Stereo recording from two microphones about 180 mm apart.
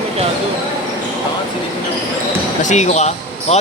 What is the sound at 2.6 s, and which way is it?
Speech, 40° left (ahead or behind).